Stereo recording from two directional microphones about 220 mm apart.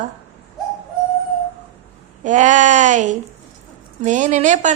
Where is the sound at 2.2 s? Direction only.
35° right (ahead or behind).